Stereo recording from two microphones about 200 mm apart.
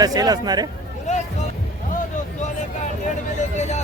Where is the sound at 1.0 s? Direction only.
35° left (ahead or behind).